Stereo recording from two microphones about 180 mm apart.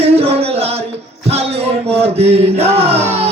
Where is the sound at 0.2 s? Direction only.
35° right (ahead or behind).